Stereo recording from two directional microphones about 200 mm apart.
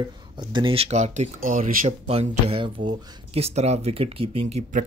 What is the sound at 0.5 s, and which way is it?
A man's voice, 25° right (ahead or behind).